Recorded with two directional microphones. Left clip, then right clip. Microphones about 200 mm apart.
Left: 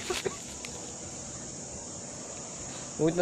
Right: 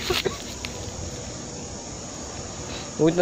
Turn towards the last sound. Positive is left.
turn(degrees=5)  # may be behind; listen again after turning